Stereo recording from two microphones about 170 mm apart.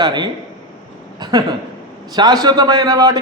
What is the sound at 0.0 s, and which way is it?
A man's voice, 25° right (ahead or behind).